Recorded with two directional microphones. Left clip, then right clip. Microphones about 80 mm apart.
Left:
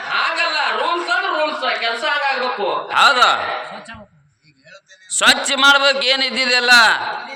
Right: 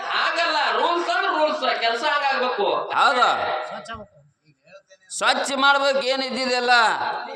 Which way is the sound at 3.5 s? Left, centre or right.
Right.